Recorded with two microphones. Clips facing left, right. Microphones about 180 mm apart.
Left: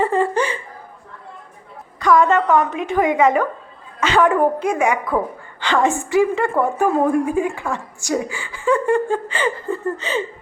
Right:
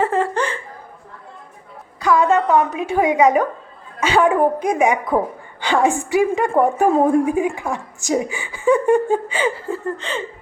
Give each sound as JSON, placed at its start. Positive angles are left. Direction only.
{"t": 0.0, "sound": "laughter", "side_deg": 0}
{"t": 0.3, "sound": "laughter", "side_deg": 10}
{"t": 2.0, "sound": "speech", "side_deg": -5}